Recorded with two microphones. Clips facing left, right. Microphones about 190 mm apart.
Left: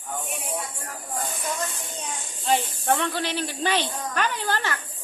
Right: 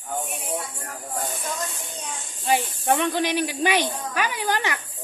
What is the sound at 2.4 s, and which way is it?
Speech, 10° right (ahead or behind).